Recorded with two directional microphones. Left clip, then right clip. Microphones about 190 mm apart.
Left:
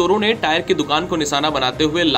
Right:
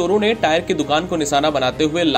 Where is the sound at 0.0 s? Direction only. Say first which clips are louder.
Even; 35° right (ahead or behind).